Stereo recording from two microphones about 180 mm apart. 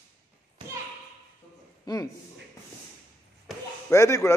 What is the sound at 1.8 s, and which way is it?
Speech, 20° left (ahead or behind).